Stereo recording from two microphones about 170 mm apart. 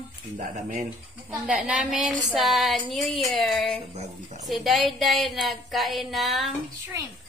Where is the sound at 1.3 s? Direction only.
Centre (ahead or behind).